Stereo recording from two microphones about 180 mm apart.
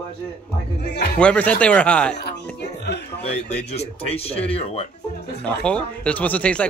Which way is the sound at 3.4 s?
35° left (ahead or behind).